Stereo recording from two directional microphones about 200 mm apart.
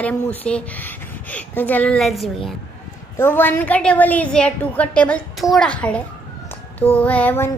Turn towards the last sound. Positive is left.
turn(degrees=10)  # may be behind; listen again after turning